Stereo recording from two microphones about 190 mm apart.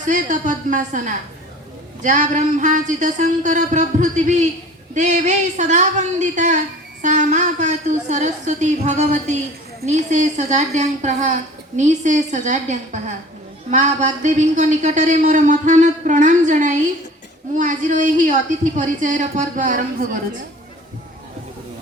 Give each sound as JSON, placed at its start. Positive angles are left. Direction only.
{"t": 0.0, "sound": "a woman's voice", "side_deg": -40}